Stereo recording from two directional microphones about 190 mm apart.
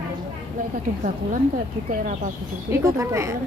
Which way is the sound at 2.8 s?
15° right (ahead or behind).